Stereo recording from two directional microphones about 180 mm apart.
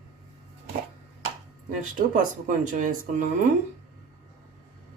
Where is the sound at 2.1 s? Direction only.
45° right (ahead or behind).